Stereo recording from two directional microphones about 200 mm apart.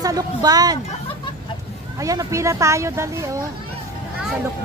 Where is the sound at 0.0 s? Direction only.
20° right (ahead or behind).